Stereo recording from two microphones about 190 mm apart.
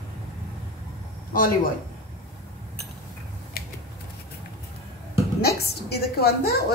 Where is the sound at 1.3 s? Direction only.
45° left (ahead or behind).